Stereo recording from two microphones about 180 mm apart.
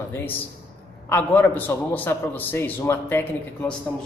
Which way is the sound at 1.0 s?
10° left (ahead or behind).